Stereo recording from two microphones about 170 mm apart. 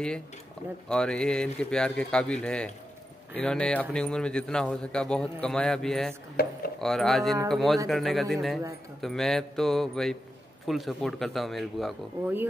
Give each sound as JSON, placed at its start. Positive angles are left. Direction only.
{"t": 0.8, "sound": "speech", "side_deg": 5}
{"t": 6.4, "sound": "speech", "side_deg": 70}
{"t": 6.8, "sound": "speech", "side_deg": 0}